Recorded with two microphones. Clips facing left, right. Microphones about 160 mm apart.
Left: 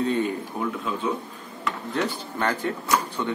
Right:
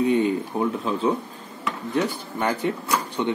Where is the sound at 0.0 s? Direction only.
15° right (ahead or behind).